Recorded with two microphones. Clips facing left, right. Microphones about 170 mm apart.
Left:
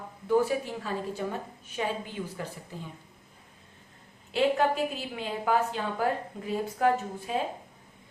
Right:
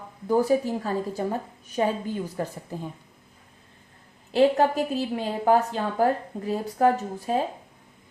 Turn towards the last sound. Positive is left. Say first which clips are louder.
# right 4 dB
turn(degrees=-40)  # may be behind; listen again after turning